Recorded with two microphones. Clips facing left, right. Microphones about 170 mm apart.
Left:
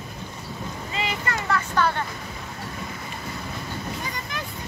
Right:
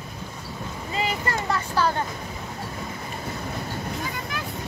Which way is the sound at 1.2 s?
30° right (ahead or behind).